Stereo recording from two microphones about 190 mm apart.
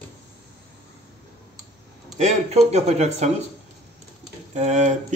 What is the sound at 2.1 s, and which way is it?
Speech, 35° right (ahead or behind).